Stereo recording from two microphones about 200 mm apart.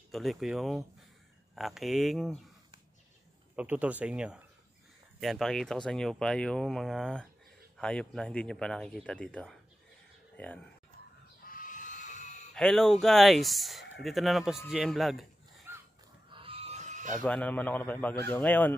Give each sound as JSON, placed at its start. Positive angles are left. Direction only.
{"t": 0.1, "sound": "speech", "side_deg": 0}
{"t": 3.5, "sound": "speech", "side_deg": -5}
{"t": 11.4, "sound": "a sound", "side_deg": 40}
{"t": 12.5, "sound": "speech", "side_deg": 5}
{"t": 16.3, "sound": "a sound", "side_deg": -25}
{"t": 17.1, "sound": "a man's voice", "side_deg": 10}